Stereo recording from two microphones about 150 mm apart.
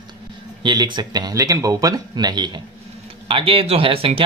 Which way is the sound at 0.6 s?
30° right (ahead or behind).